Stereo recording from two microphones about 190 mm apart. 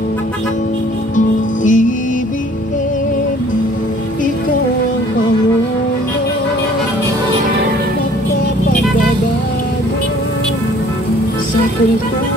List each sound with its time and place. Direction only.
1.1 s music: 40° left (ahead or behind)